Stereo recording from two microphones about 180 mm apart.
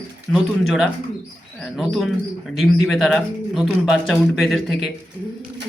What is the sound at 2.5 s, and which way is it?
Speech, centre (ahead or behind).